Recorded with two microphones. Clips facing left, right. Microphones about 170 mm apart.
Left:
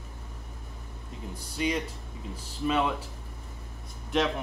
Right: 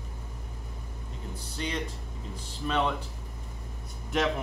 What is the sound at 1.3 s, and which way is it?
Speech, 10° left (ahead or behind).